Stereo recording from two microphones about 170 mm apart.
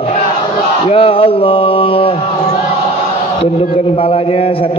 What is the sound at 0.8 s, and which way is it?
A man's voice, 35° left (ahead or behind).